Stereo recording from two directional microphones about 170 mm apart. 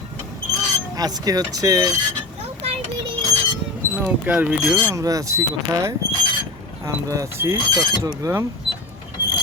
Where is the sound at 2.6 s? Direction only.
35° right (ahead or behind).